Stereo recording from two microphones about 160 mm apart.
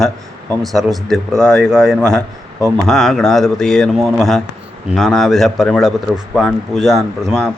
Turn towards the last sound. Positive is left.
turn(degrees=0)  # may be behind; listen again after turning